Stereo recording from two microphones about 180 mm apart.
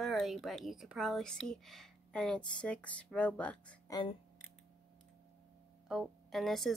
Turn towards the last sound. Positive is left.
turn(degrees=0)  # may be behind; listen again after turning